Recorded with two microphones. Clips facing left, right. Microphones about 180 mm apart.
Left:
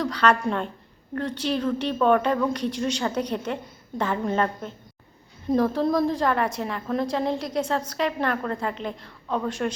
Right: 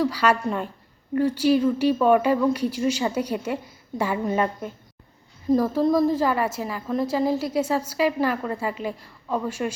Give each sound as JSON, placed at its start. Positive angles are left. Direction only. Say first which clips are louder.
{"t": 0.0, "sound": "a woman's voice", "louder": "right 1 dB", "side_deg": -10}